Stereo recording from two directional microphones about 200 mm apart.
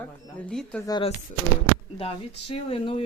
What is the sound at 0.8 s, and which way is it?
Speech, 20° left (ahead or behind).